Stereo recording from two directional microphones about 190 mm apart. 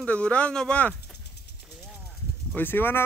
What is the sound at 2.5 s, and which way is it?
Speech, 10° left (ahead or behind).